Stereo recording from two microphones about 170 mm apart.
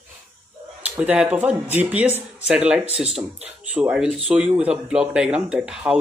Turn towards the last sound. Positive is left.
turn(degrees=-5)  # may be behind; listen again after turning